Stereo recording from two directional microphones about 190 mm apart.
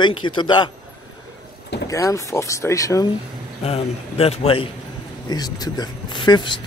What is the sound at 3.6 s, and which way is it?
A man's voice, 35° left (ahead or behind).